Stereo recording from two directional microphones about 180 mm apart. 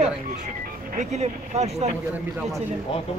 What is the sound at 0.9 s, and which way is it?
Speech, 40° right (ahead or behind).